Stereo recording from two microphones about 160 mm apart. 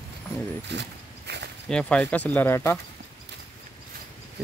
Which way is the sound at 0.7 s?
90° right.